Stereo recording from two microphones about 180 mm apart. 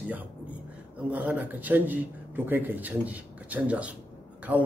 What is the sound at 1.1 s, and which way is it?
A man's voice, 10° right (ahead or behind).